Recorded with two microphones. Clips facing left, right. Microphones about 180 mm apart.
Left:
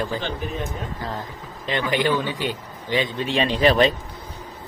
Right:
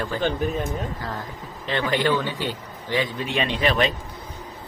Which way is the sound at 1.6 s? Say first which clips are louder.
Even; 15° left (ahead or behind).